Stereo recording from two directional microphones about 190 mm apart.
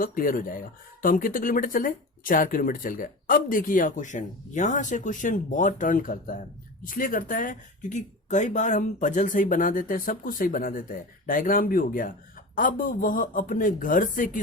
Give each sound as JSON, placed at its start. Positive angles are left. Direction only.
{"t": 0.0, "sound": "speech", "side_deg": 50}